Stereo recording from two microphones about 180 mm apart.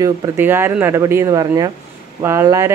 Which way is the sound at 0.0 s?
10° right (ahead or behind).